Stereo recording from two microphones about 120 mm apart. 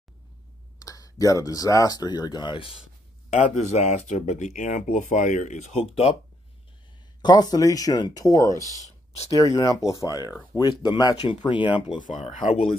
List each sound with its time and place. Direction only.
0.7 s speech: 30° left (ahead or behind); by 2.8 s 45° left (ahead or behind)
3.3 s speech: 75° left (ahead or behind)
7.2 s speech: 35° left (ahead or behind)
8.7 s a sound: 70° left (ahead or behind)
9.3 s speech: 30° left (ahead or behind)
12.0 s speech: 90° left
12.4 s speech: 60° left (ahead or behind)